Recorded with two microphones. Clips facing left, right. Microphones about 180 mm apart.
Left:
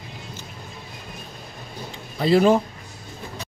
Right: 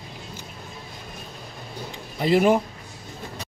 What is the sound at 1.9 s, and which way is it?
Speech, 15° right (ahead or behind).